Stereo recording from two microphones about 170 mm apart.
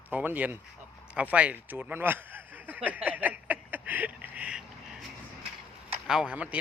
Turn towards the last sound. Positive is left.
turn(degrees=-10)  # may be behind; listen again after turning